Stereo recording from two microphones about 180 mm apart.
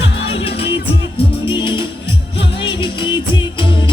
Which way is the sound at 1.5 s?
25° left (ahead or behind).